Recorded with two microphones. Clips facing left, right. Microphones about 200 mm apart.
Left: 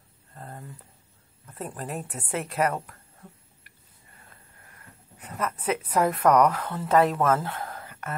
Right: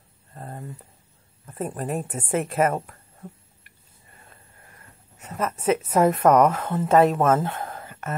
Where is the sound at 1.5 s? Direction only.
20° right (ahead or behind).